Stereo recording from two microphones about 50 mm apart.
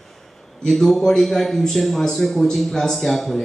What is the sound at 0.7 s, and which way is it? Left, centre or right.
A man's voice, centre.